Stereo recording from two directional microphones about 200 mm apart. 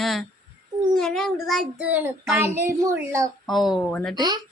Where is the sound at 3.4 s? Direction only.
Centre (ahead or behind).